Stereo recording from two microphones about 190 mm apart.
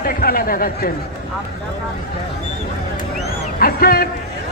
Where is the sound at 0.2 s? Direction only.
50° left (ahead or behind).